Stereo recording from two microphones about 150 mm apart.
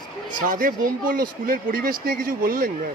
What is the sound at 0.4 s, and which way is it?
Speech, 65° right (ahead or behind).